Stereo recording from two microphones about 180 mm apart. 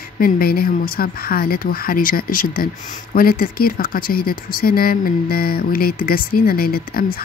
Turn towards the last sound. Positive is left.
turn(degrees=55)  # may be behind; listen again after turning